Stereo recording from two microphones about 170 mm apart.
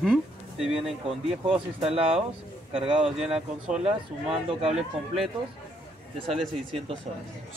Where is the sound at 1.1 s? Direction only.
35° right (ahead or behind).